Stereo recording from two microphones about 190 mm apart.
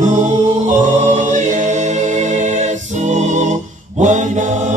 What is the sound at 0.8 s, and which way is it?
A capella, 40° right (ahead or behind).